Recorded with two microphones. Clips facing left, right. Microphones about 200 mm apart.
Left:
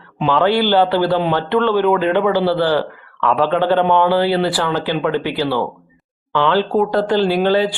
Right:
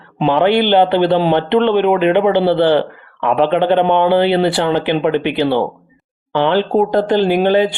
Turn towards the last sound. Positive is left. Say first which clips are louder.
# right 2 dB
turn(degrees=-20)  # may be behind; listen again after turning